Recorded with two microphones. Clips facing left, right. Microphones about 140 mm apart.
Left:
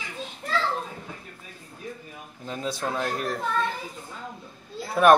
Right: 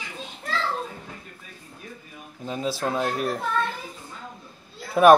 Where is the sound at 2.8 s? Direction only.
20° right (ahead or behind).